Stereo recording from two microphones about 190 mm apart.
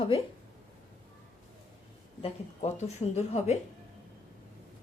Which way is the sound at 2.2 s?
35° left (ahead or behind).